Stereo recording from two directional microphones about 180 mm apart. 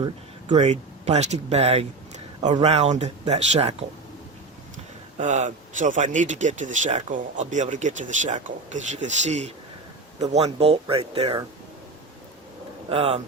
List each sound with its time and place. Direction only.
0.5 s speech: 40° right (ahead or behind)
5.1 s speech: 40° right (ahead or behind)
12.9 s speech: 30° right (ahead or behind)